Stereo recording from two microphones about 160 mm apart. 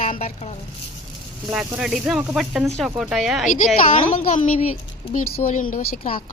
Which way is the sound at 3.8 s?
50° left (ahead or behind).